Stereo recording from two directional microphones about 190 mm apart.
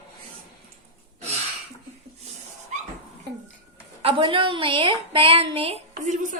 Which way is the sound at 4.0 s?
25° right (ahead or behind).